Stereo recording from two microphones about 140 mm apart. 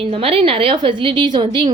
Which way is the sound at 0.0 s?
40° right (ahead or behind).